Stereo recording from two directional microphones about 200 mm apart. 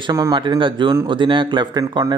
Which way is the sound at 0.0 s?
20° right (ahead or behind).